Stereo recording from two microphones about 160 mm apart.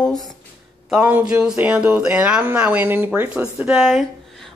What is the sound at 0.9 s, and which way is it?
Speech, 10° right (ahead or behind).